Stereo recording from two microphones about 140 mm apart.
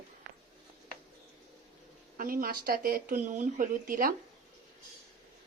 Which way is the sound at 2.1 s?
90° right.